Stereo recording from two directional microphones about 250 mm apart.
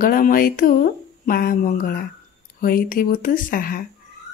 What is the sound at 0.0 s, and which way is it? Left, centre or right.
Speech, left.